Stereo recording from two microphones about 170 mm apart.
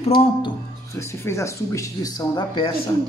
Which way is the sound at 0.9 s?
15° left (ahead or behind).